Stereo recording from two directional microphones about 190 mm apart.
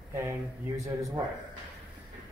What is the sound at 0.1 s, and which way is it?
Speech, 15° right (ahead or behind).